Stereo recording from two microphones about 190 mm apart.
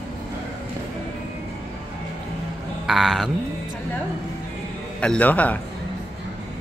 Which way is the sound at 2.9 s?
Centre (ahead or behind).